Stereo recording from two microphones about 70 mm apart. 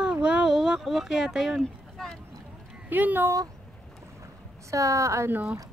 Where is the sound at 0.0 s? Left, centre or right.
Centre.